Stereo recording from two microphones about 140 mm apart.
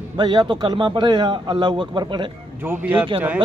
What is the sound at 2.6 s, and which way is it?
Speech, 15° right (ahead or behind).